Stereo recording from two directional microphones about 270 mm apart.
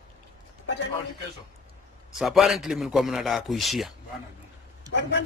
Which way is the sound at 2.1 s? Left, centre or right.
Centre.